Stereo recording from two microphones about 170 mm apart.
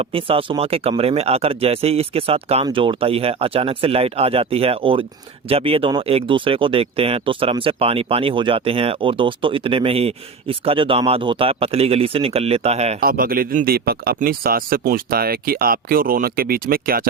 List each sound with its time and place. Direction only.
0.0 s speech: 35° right (ahead or behind)
13.0 s speech: 60° right (ahead or behind)